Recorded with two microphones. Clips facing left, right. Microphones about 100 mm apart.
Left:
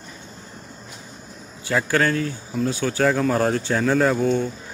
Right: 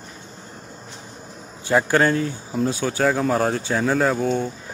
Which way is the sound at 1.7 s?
25° right (ahead or behind).